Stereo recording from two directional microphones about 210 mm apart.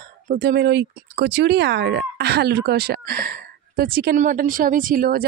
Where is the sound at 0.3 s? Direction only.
50° right (ahead or behind).